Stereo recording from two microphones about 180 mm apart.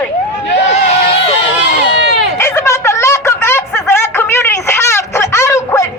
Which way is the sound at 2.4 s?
15° left (ahead or behind).